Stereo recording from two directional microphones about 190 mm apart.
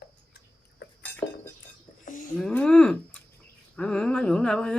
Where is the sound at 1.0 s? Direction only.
10° left (ahead or behind).